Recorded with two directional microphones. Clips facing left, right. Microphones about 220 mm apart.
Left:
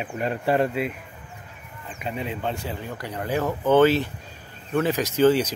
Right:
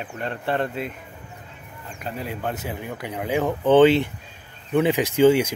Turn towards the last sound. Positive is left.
turn(degrees=-10)  # may be behind; listen again after turning